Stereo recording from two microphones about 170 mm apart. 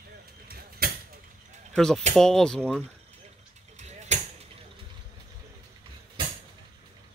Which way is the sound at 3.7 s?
45° right (ahead or behind).